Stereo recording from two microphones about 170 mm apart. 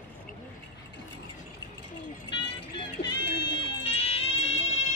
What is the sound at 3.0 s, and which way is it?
Run, 90° left.